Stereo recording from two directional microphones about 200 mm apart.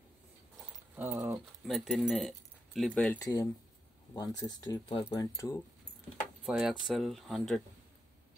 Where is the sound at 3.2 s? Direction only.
20° left (ahead or behind).